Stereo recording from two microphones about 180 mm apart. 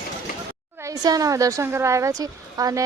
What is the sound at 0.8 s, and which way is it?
A woman's voice, 20° right (ahead or behind).